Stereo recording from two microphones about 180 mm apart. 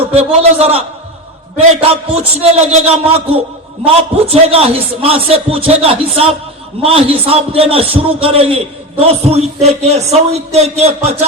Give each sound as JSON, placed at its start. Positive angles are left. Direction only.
{"t": 0.1, "sound": "a man's voice", "side_deg": -35}
{"t": 3.8, "sound": "a man's voice", "side_deg": -35}